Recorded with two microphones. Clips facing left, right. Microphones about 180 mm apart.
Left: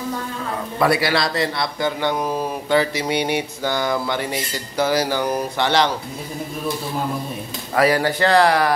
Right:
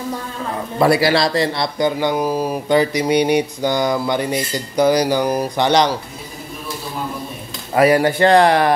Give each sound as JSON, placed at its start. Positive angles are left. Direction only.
{"t": 0.7, "sound": "a man's voice", "side_deg": -25}
{"t": 7.7, "sound": "speech", "side_deg": -20}